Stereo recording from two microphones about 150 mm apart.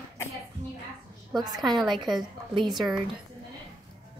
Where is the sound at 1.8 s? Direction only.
30° right (ahead or behind).